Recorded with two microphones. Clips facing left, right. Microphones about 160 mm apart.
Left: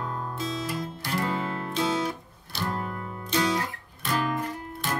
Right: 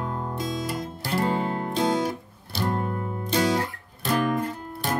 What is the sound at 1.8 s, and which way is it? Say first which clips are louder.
Music: right 3 dB; 55° right (ahead or behind).